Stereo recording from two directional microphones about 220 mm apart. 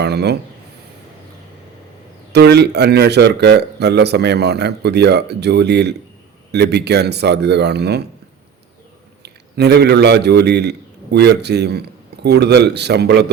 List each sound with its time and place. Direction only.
0.0 s speech: 50° right (ahead or behind)
2.3 s speech: 50° right (ahead or behind)
9.2 s a man's voice: 50° right (ahead or behind)